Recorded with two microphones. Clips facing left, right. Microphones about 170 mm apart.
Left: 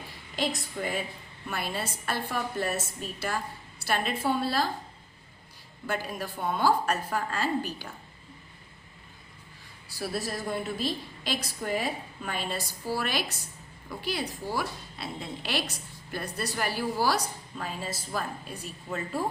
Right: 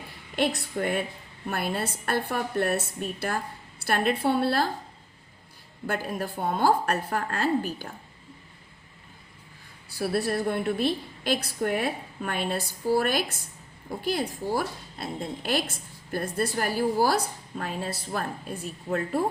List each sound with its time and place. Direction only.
0.3 s a woman's voice: 60° right (ahead or behind)
5.8 s a woman's voice: 55° right (ahead or behind)
10.0 s a woman's voice: 60° right (ahead or behind)